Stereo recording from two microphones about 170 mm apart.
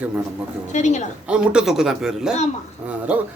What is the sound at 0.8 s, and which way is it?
Speech, 45° left (ahead or behind).